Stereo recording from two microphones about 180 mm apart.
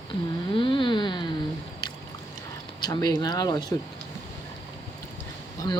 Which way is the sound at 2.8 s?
20° left (ahead or behind).